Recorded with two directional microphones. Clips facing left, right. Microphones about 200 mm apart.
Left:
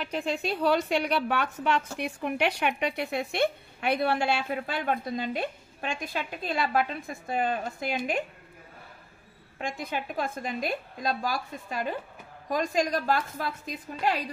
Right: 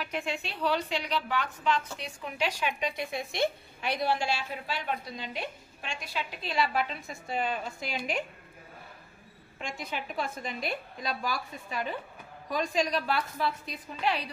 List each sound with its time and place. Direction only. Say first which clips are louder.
0.0 s a woman's voice: left 4 dB; 35° left (ahead or behind)
9.6 s a woman's voice: left 4 dB; 50° left (ahead or behind)